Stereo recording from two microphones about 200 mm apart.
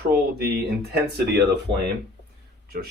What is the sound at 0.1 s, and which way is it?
Speech, 55° right (ahead or behind).